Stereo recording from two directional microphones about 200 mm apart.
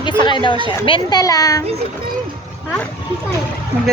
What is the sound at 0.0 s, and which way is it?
A child's voice, 25° left (ahead or behind).